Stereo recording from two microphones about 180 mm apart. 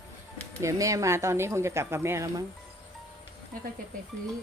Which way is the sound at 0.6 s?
15° right (ahead or behind).